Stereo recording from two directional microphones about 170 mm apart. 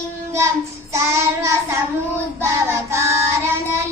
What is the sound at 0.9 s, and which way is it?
Child singing, 15° right (ahead or behind).